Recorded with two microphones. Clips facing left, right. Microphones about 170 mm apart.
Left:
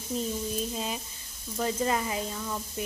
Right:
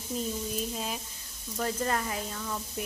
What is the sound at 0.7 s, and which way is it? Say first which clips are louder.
A woman's voice: left 2 dB; centre (ahead or behind).